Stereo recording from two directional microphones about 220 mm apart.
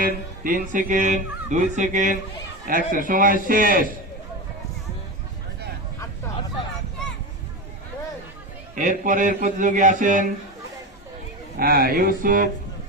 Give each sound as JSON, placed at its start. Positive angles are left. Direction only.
{"t": 0.4, "sound": "speech", "side_deg": -40}
{"t": 8.7, "sound": "speech", "side_deg": -35}
{"t": 11.5, "sound": "speech", "side_deg": -40}